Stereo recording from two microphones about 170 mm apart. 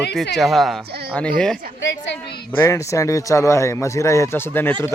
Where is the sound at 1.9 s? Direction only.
90° left.